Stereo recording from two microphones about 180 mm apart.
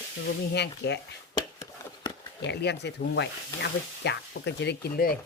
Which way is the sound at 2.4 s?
70° left (ahead or behind).